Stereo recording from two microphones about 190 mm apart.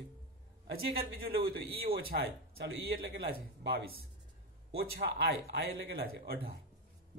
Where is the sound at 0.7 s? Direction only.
55° right (ahead or behind).